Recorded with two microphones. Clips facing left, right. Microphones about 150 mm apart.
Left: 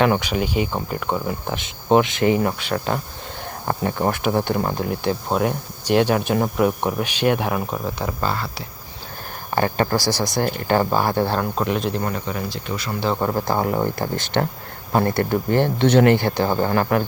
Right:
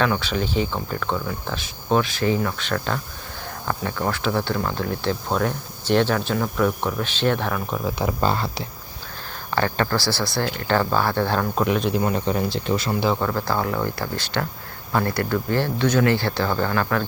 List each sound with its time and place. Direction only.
0.0 s speech: 15° left (ahead or behind)
2.6 s speech: 10° left (ahead or behind)
3.7 s speech: 30° left (ahead or behind); by 7.8 s 10° left (ahead or behind)
7.9 s speech: 10° right (ahead or behind)
8.3 s speech: 20° right (ahead or behind)
9.5 s speech: 15° left (ahead or behind)
11.5 s speech: 5° right (ahead or behind)
12.1 s speech: 30° right (ahead or behind)
13.1 s speech: 20° left (ahead or behind)